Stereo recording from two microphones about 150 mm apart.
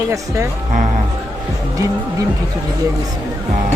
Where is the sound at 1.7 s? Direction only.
20° right (ahead or behind).